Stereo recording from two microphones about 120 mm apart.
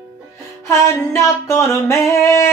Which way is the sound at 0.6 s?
25° left (ahead or behind).